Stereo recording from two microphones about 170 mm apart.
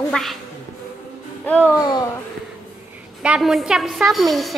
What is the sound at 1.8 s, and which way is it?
Speech, 25° left (ahead or behind).